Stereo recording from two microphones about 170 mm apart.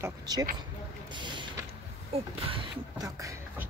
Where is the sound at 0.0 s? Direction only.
20° right (ahead or behind).